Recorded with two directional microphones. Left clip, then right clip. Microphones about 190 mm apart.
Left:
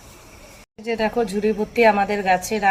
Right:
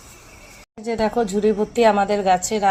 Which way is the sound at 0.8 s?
Centre (ahead or behind).